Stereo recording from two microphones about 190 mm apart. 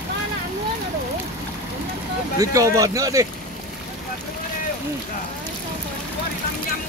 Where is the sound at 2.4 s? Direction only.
15° right (ahead or behind).